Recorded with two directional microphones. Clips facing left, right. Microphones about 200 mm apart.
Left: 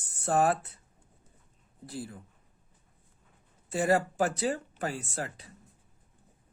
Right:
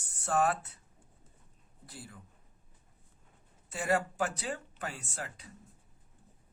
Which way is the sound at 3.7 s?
35° left (ahead or behind).